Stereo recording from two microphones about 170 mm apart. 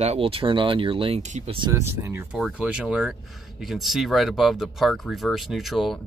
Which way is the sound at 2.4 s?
5° right (ahead or behind).